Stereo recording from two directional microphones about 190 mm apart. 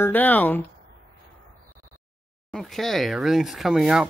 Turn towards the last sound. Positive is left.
turn(degrees=-5)  # may be behind; listen again after turning